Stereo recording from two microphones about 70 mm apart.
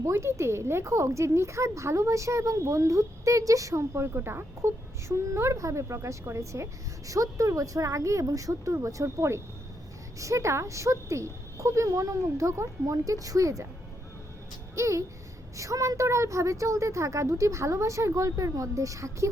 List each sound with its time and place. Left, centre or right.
0.0 s a woman's voice: right
14.8 s a woman's voice: right